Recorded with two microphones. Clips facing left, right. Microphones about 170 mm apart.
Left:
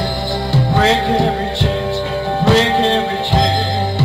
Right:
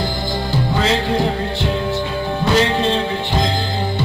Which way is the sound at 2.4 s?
85° left.